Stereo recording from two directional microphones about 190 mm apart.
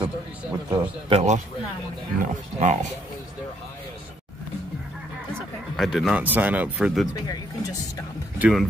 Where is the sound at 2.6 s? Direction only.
40° right (ahead or behind).